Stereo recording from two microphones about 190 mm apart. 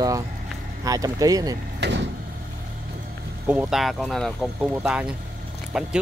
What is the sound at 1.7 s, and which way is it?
Vehicle, 65° right (ahead or behind).